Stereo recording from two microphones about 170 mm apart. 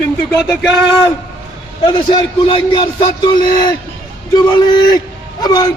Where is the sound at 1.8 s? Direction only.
25° left (ahead or behind).